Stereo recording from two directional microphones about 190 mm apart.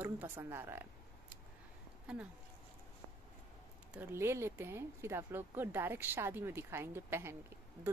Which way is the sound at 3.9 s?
15° right (ahead or behind).